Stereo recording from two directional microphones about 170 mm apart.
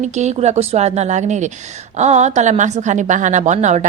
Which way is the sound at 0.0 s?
40° right (ahead or behind).